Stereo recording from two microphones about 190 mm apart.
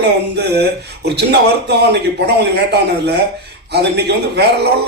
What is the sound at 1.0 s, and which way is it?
A man's voice, 60° right (ahead or behind).